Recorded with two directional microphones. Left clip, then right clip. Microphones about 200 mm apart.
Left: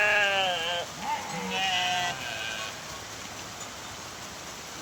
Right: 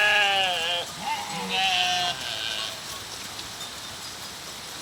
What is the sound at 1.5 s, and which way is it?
Sheep, 15° left (ahead or behind).